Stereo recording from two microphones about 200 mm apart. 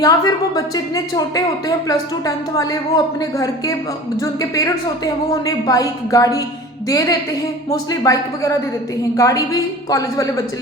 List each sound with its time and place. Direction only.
0.0 s a woman's voice: 20° left (ahead or behind)